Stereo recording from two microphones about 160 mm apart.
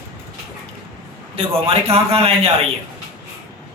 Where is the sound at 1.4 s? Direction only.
40° right (ahead or behind).